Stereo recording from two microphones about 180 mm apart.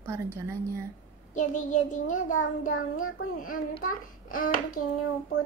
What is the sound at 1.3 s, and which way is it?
A child's voice, 45° left (ahead or behind).